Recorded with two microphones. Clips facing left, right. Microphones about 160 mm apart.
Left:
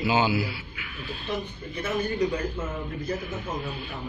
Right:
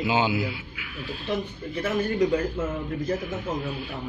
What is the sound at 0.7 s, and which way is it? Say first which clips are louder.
Speech: right 2 dB; 5° right (ahead or behind).